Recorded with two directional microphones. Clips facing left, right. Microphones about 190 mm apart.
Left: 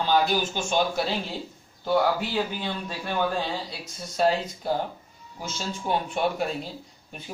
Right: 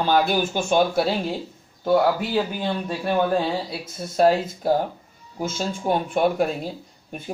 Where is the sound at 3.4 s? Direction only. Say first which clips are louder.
Right 6 dB; 50° right (ahead or behind).